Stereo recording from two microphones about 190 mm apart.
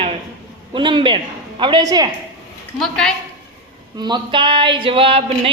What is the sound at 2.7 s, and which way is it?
Speech, centre (ahead or behind).